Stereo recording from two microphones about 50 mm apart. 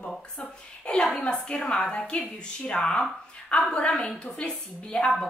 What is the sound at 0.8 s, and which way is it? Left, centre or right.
A woman's voice, centre.